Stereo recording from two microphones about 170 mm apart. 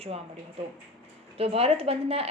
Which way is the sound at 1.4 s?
35° right (ahead or behind).